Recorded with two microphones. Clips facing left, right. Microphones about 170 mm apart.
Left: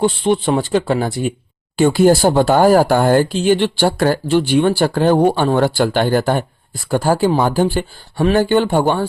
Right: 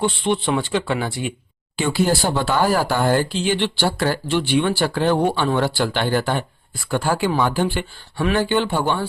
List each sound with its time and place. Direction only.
0.0 s speech: 40° left (ahead or behind)